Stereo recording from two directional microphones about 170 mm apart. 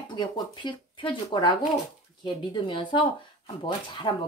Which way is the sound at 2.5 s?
30° left (ahead or behind).